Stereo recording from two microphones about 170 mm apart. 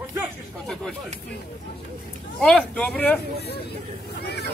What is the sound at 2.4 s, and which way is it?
Speech, 5° left (ahead or behind).